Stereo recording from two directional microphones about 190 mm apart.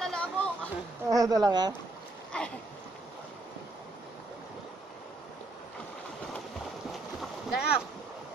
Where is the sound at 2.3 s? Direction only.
5° left (ahead or behind).